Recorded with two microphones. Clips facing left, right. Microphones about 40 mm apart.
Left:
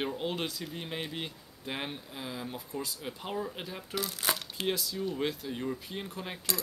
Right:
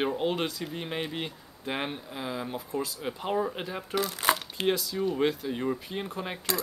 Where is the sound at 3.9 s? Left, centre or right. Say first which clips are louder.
Right 6 dB; right.